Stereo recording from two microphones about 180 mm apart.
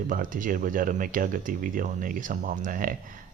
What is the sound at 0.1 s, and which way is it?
Speech, 50° right (ahead or behind).